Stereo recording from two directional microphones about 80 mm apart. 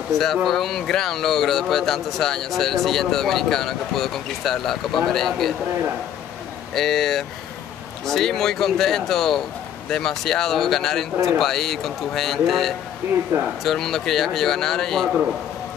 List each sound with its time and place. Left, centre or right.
0.2 s speech: centre
6.7 s speech: centre
13.0 s speech: right
13.7 s speech: centre